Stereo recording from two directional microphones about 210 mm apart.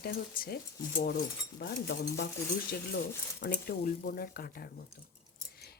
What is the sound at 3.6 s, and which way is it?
Speech, 45° left (ahead or behind).